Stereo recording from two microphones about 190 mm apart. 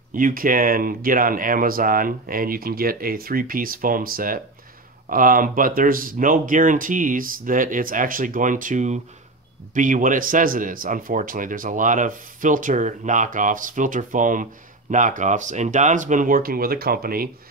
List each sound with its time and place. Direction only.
0.1 s speech: 45° right (ahead or behind)